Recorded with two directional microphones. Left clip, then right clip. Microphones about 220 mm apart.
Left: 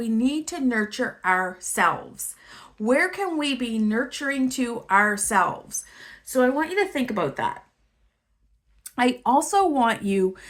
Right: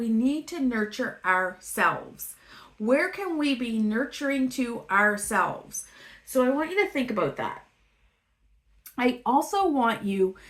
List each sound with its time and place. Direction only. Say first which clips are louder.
0.0 s a woman's voice: left 2 dB; 45° left (ahead or behind)
8.8 s speech: left 4 dB; 40° left (ahead or behind)